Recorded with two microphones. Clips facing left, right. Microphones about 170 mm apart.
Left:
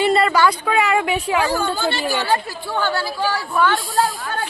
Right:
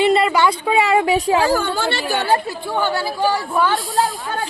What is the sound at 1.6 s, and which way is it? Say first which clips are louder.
Speech: even; 70° right (ahead or behind).